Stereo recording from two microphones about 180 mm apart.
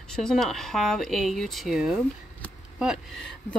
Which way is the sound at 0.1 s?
Centre (ahead or behind).